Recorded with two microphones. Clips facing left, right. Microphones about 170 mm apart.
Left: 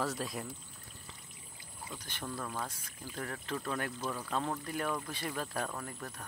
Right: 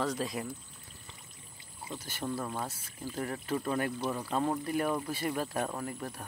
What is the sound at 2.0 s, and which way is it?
Speech, 10° right (ahead or behind).